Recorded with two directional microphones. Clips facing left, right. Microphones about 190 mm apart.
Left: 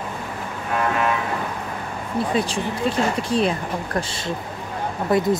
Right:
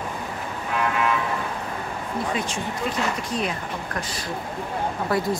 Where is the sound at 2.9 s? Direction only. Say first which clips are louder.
Left 6 dB; 30° left (ahead or behind).